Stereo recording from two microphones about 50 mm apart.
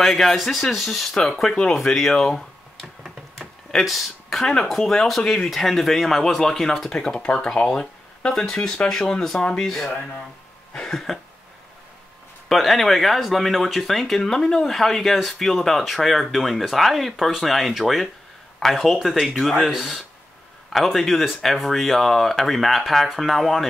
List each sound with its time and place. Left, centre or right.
0.0 s speech: centre
1.5 s speech: centre
1.8 s speech: centre
5.5 s speech: centre
8.2 s speech: centre
10.7 s cough: centre
12.4 s speech: centre